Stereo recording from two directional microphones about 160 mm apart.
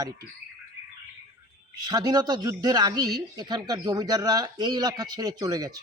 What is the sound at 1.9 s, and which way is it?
A man's voice, 25° right (ahead or behind).